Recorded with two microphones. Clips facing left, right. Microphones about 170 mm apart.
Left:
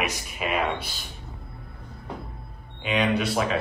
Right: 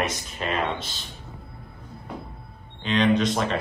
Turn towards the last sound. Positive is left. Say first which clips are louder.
# right 2 dB
turn(degrees=5)  # may be behind; listen again after turning